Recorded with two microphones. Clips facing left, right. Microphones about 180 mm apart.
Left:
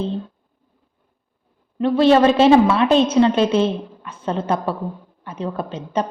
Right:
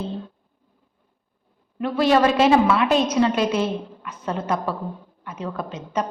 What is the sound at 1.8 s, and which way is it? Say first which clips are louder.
A woman's voice: left 5 dB; 30° left (ahead or behind).